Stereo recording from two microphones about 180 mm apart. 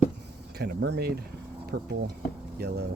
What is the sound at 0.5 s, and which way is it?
Speech, 65° right (ahead or behind).